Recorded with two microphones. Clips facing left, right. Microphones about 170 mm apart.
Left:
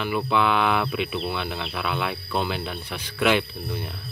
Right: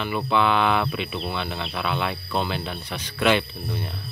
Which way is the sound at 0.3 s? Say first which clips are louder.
Right 2 dB; 5° left (ahead or behind).